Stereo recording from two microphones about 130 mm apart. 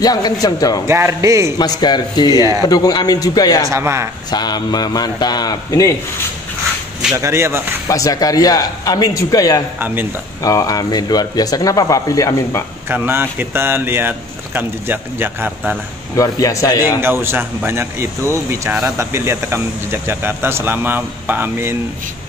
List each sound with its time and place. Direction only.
0.0 s speech: 30° left (ahead or behind)
0.8 s speech: 20° right (ahead or behind)
1.6 s a man's voice: 35° left (ahead or behind)
3.6 s speech: 20° right (ahead or behind)
4.3 s a man's voice: 30° left (ahead or behind)
7.2 s speech: 20° right (ahead or behind)
7.9 s speech: 25° left (ahead or behind)
9.8 s speech: 15° right (ahead or behind)
10.4 s speech: 25° left (ahead or behind)
12.8 s speech: 15° right (ahead or behind)
16.2 s speech: 25° left (ahead or behind)
17.0 s speech: 15° right (ahead or behind)